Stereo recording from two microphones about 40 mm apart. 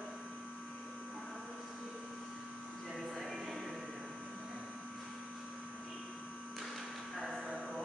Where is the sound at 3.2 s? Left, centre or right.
Centre.